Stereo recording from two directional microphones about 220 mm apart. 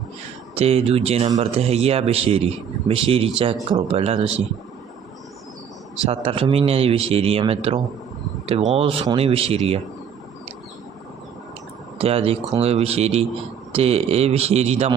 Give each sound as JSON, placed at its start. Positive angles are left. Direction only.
{"t": 0.5, "sound": "a man's voice", "side_deg": -25}
{"t": 6.1, "sound": "a man's voice", "side_deg": -25}
{"t": 11.9, "sound": "a man's voice", "side_deg": -25}